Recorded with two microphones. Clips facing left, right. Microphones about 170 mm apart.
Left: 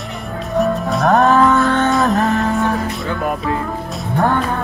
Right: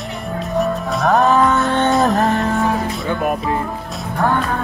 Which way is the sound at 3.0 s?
20° right (ahead or behind).